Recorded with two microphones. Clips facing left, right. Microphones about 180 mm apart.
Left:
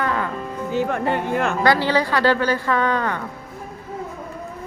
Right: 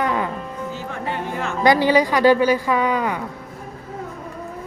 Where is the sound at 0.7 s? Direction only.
60° left (ahead or behind).